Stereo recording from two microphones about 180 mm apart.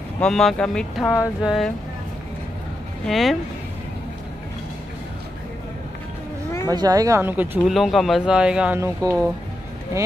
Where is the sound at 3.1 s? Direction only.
Centre (ahead or behind).